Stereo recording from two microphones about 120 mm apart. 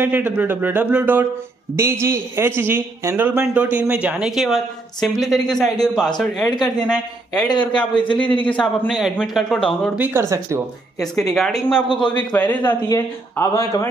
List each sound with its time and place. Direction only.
0.0 s a man's voice: 15° right (ahead or behind); by 6.5 s 5° left (ahead or behind)
7.6 s a man's voice: 10° left (ahead or behind)
7.9 s a man's voice: 45° left (ahead or behind)
8.5 s speech: centre (ahead or behind)
9.9 s speech: 15° right (ahead or behind)
11.0 s speech: 5° left (ahead or behind)
11.9 s a man's voice: 40° left (ahead or behind)
12.4 s a man's voice: 15° left (ahead or behind)
12.8 s speech: 25° left (ahead or behind)